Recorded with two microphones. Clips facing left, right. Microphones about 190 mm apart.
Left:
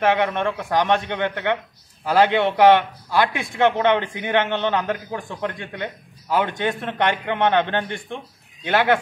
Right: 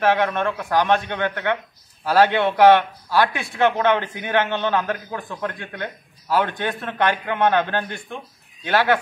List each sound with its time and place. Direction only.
0.0 s a man's voice: 15° left (ahead or behind)